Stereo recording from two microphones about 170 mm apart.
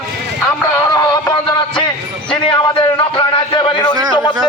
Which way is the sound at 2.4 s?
30° left (ahead or behind).